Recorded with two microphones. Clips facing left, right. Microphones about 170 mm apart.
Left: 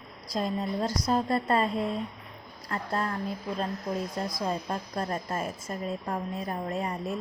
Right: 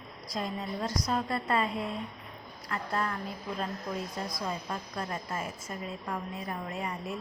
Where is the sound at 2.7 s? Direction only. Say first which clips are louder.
Left 2 dB; 35° left (ahead or behind).